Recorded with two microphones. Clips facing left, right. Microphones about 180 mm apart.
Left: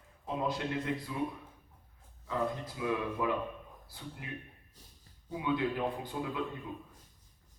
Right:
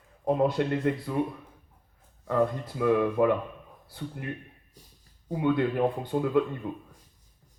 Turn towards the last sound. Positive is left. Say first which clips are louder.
# right 11 dB
turn(degrees=-65)  # may be behind; listen again after turning